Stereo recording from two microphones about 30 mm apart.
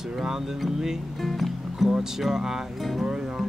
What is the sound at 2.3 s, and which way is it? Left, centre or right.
Speech, centre.